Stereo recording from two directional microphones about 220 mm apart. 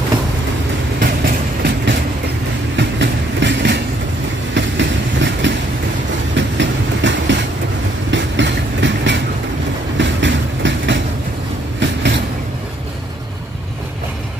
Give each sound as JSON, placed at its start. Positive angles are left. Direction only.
{"t": 0.9, "sound": "train", "side_deg": -40}
{"t": 8.1, "sound": "vehicle", "side_deg": -55}
{"t": 9.9, "sound": "train", "side_deg": -55}